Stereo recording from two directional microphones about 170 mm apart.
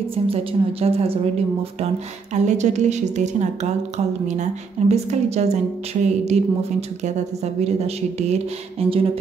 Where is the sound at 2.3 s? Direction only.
45° right (ahead or behind).